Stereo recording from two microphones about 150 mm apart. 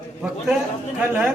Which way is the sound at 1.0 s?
5° right (ahead or behind).